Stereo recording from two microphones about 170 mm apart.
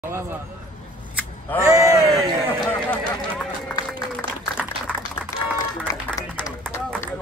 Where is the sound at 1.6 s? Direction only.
15° right (ahead or behind).